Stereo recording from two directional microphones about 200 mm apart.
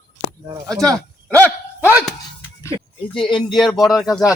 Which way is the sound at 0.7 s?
15° right (ahead or behind).